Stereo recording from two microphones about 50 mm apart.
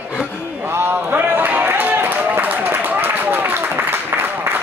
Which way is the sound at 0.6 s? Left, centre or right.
Right.